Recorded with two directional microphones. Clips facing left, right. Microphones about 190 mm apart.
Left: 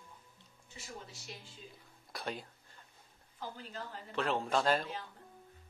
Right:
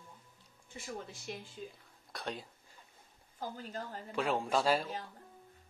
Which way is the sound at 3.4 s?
45° right (ahead or behind).